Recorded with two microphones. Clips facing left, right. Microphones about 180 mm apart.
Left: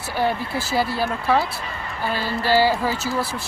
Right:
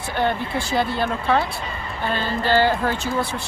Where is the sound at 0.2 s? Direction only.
5° left (ahead or behind).